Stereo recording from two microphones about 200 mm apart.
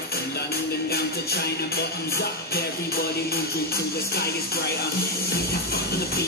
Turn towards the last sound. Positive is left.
turn(degrees=50)  # may be behind; listen again after turning